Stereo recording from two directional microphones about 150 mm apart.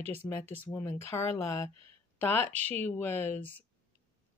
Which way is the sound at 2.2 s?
15° left (ahead or behind).